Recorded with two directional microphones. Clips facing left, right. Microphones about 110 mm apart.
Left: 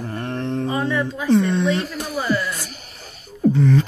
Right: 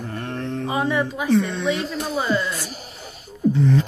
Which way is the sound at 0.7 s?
15° right (ahead or behind).